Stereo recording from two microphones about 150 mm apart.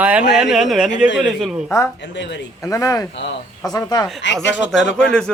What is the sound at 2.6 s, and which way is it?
A man's voice, 20° left (ahead or behind).